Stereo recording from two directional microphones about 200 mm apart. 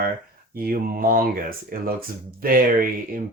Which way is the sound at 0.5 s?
45° right (ahead or behind).